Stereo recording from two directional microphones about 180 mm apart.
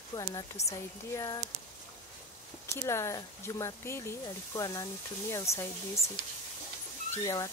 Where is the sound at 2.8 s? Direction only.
15° left (ahead or behind).